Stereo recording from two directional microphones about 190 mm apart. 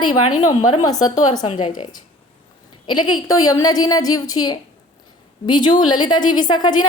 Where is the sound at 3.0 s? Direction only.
20° left (ahead or behind).